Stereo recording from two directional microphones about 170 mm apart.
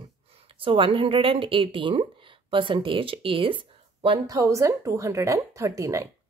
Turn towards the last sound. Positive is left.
turn(degrees=-20)  # may be behind; listen again after turning